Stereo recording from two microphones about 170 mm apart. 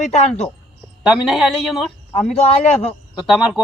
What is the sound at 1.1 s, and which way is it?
Speech, centre (ahead or behind).